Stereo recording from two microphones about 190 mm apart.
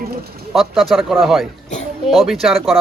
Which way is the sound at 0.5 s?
Centre (ahead or behind).